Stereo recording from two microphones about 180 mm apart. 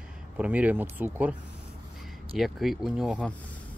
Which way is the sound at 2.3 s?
Centre (ahead or behind).